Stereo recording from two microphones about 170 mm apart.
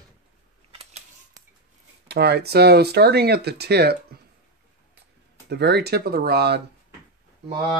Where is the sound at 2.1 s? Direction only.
70° right (ahead or behind).